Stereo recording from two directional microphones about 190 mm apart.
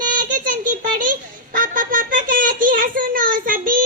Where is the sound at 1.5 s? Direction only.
45° right (ahead or behind).